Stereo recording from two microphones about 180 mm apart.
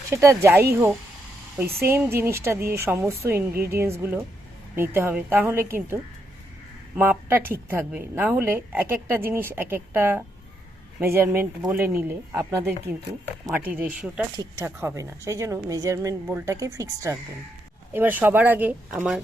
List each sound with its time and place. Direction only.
0.1 s a woman's voice: 15° right (ahead or behind)